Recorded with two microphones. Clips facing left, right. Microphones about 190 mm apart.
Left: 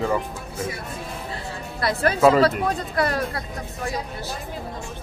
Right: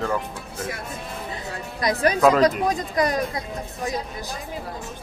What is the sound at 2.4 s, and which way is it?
Speech, 15° right (ahead or behind).